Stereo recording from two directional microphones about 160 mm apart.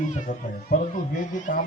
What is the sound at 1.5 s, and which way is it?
Speech, 50° left (ahead or behind).